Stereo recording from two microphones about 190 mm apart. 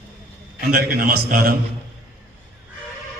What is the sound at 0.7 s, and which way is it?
Speech, 50° right (ahead or behind).